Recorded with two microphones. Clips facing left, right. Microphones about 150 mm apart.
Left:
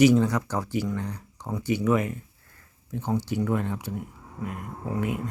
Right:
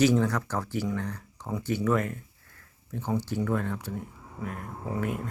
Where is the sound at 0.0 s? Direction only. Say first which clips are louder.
Left 4 dB; 15° left (ahead or behind).